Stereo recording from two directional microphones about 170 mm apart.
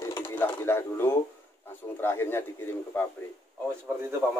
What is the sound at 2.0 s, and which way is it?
A man's voice, 15° left (ahead or behind).